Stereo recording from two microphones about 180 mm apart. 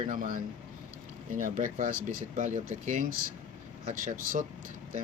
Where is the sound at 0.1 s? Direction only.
50° right (ahead or behind).